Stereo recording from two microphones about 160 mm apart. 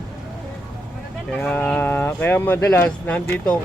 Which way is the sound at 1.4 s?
5° left (ahead or behind).